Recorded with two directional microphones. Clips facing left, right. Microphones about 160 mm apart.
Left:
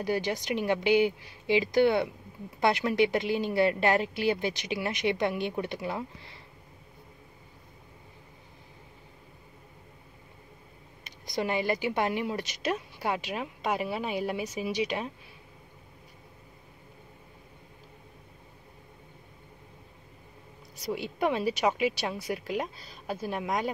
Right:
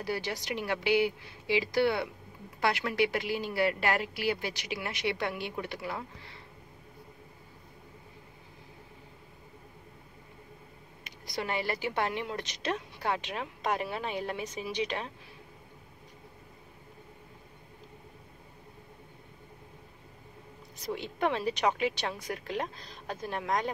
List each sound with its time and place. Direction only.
0.0 s speech: 20° left (ahead or behind)
11.3 s a woman's voice: 15° left (ahead or behind)
20.7 s a woman's voice: 10° left (ahead or behind)